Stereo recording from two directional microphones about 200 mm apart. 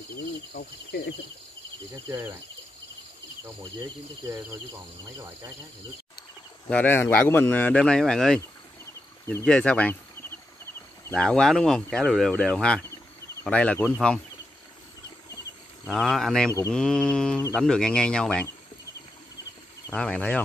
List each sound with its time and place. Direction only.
0.6 s speech: 55° left (ahead or behind)
3.4 s speech: 15° right (ahead or behind)
6.7 s speech: 10° left (ahead or behind)
11.1 s speech: 5° left (ahead or behind)
15.8 s speech: centre (ahead or behind)
17.6 s speech: 5° left (ahead or behind)
19.9 s speech: 5° left (ahead or behind)